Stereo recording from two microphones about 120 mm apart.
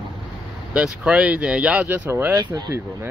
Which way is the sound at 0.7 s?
10° right (ahead or behind).